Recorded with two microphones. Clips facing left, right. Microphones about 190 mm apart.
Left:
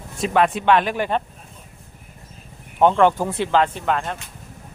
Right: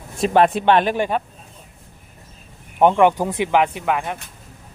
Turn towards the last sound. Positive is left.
turn(degrees=-10)  # may be behind; listen again after turning